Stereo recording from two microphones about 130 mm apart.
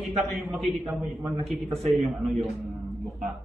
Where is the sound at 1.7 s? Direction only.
55° right (ahead or behind).